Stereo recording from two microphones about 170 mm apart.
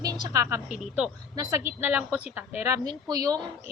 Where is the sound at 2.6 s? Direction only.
20° right (ahead or behind).